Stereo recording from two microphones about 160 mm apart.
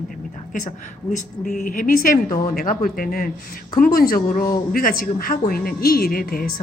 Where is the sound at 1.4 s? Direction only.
55° left (ahead or behind).